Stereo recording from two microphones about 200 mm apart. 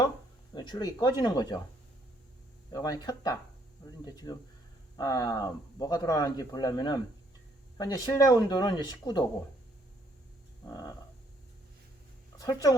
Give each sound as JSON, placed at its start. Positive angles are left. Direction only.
{"t": 0.5, "sound": "speech", "side_deg": 20}
{"t": 2.7, "sound": "speech", "side_deg": 20}
{"t": 10.7, "sound": "speech", "side_deg": 20}
{"t": 12.4, "sound": "speech", "side_deg": 20}